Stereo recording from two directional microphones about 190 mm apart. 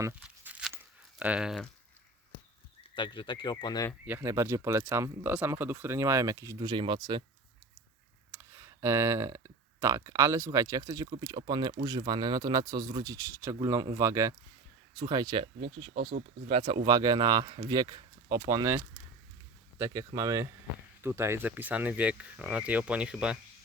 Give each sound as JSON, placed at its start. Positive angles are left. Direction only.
{"t": 0.0, "sound": "a sound", "side_deg": -10}
{"t": 1.2, "sound": "speech", "side_deg": -5}
{"t": 2.9, "sound": "speech", "side_deg": 25}
{"t": 4.0, "sound": "speech", "side_deg": -10}
{"t": 8.3, "sound": "speech", "side_deg": -10}
{"t": 19.8, "sound": "speech", "side_deg": -15}